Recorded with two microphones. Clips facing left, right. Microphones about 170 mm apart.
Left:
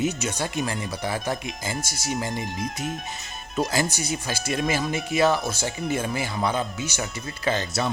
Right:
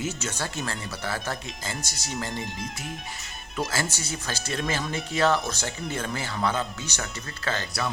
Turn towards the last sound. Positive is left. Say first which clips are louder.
# left 4 dB
turn(degrees=20)  # may be behind; listen again after turning